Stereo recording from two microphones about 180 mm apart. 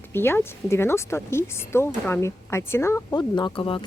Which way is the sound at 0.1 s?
10° left (ahead or behind).